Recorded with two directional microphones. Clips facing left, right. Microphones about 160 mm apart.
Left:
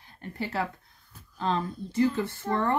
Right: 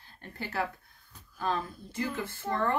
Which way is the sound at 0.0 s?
20° left (ahead or behind).